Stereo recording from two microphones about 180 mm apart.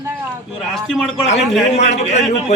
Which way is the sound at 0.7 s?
Centre (ahead or behind).